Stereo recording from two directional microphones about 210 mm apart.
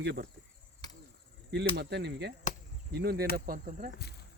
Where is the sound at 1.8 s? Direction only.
55° right (ahead or behind).